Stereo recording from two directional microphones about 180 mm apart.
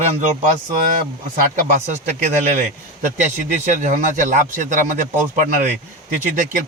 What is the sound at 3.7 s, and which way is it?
A man's voice, 45° right (ahead or behind).